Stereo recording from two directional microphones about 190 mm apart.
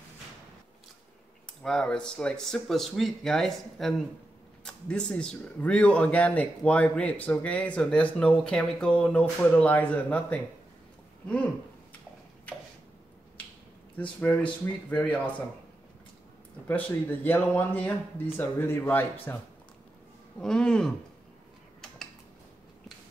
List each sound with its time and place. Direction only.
1.6 s speech: 5° left (ahead or behind)
13.9 s speech: 5° left (ahead or behind)
16.6 s speech: 10° left (ahead or behind)